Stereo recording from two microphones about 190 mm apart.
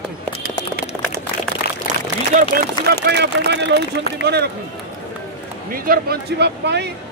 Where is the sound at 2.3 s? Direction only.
40° right (ahead or behind).